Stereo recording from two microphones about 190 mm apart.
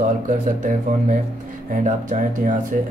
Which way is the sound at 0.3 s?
45° right (ahead or behind).